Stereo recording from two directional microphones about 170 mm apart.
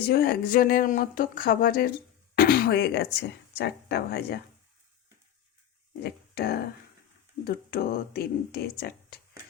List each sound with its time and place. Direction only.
0.1 s speech: 65° left (ahead or behind)
6.0 s speech: 70° left (ahead or behind)